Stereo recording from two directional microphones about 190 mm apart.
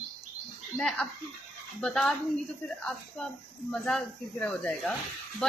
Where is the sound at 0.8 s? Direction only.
Centre (ahead or behind).